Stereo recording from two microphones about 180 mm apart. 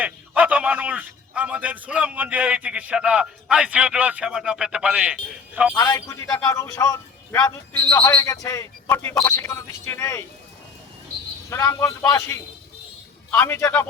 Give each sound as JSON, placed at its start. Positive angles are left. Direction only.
{"t": 0.0, "sound": "a man's voice", "side_deg": -10}
{"t": 5.7, "sound": "speech", "side_deg": 20}
{"t": 11.4, "sound": "speech", "side_deg": 15}